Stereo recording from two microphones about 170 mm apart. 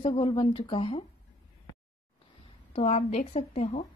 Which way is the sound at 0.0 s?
30° left (ahead or behind).